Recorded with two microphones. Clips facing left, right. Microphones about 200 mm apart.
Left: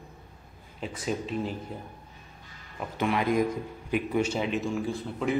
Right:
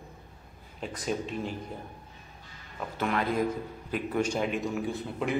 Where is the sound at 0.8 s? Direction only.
5° left (ahead or behind).